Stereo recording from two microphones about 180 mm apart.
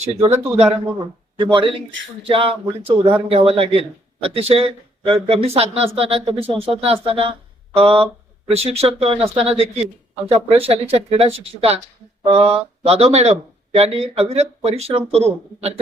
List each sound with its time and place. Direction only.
0.0 s a man's voice: 35° right (ahead or behind)